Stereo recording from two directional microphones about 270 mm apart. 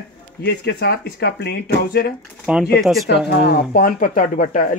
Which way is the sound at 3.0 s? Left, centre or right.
Left.